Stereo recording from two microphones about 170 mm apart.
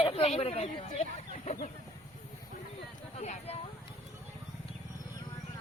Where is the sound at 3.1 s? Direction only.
40° left (ahead or behind).